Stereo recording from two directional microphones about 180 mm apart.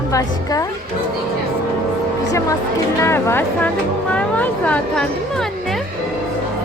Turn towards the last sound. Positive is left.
turn(degrees=0)  # may be behind; listen again after turning